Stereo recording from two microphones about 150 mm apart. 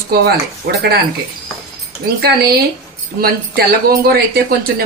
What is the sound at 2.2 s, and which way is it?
Speech, 90° right.